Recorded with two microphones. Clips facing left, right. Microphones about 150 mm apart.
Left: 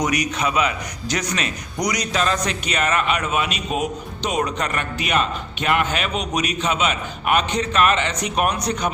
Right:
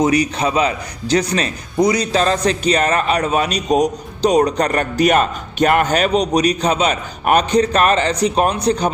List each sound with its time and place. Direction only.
0.0 s a man's voice: 30° right (ahead or behind)